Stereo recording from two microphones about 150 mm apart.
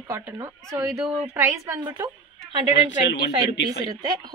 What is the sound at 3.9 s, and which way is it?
Speech, 30° right (ahead or behind).